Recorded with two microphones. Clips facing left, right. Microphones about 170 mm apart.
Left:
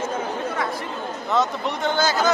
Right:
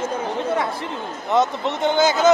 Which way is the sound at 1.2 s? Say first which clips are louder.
Right 3 dB; 20° right (ahead or behind).